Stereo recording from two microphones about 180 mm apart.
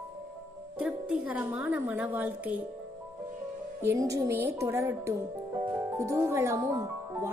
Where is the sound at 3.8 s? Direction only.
15° right (ahead or behind).